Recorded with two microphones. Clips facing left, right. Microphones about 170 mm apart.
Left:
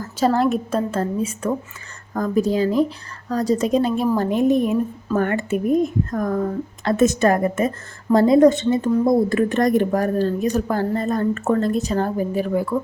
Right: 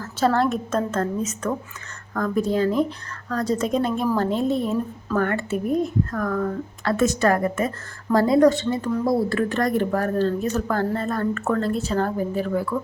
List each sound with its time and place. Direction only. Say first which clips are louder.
0.0 s a woman's voice: left 2 dB; 15° left (ahead or behind)